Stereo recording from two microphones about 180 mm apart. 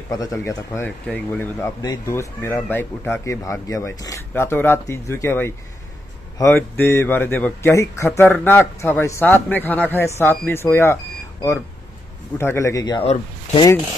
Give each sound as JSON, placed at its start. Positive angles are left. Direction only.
{"t": 0.1, "sound": "speech", "side_deg": 20}
{"t": 12.4, "sound": "speech", "side_deg": 15}
{"t": 13.0, "sound": "speech", "side_deg": 35}